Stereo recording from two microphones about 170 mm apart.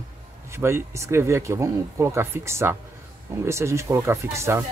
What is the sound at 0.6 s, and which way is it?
Speech, 15° right (ahead or behind).